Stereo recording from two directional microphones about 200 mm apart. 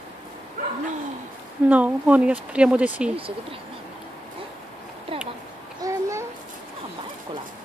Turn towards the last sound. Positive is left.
turn(degrees=-15)  # may be behind; listen again after turning